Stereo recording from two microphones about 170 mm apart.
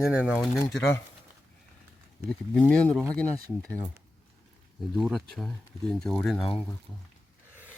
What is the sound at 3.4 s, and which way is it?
Speech, 5° left (ahead or behind).